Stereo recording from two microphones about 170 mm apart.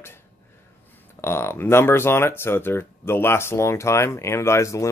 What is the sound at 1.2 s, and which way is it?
Speech, 15° left (ahead or behind).